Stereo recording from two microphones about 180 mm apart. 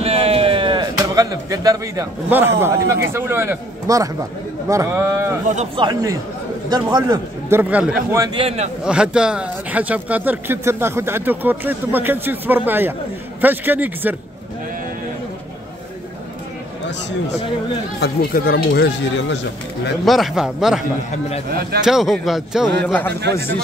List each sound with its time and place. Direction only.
0.0 s a sound: 35° right (ahead or behind); by 2.0 s 20° right (ahead or behind)
2.2 s a man's voice: 10° right (ahead or behind)
8.4 s a man's voice: 35° right (ahead or behind)
8.8 s speech: 5° right (ahead or behind)
18.0 s speech: 55° left (ahead or behind); by 19.4 s 85° left
20.1 s speech: centre (ahead or behind)
21.5 s speech: 55° right (ahead or behind)
21.8 s a man's voice: centre (ahead or behind)